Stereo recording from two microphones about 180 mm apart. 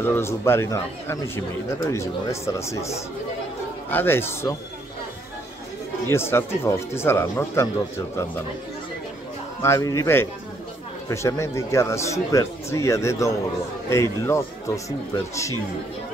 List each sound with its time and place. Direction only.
0.0 s speech: 15° left (ahead or behind)
6.0 s speech: 15° left (ahead or behind)
9.6 s speech: 15° left (ahead or behind)